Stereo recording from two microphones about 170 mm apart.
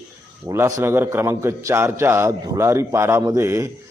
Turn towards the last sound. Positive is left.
turn(degrees=-15)  # may be behind; listen again after turning